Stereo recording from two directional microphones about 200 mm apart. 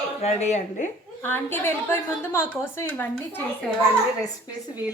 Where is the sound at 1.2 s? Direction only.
10° left (ahead or behind).